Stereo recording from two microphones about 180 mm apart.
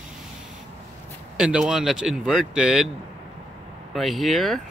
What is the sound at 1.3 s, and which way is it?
Speech, 5° right (ahead or behind).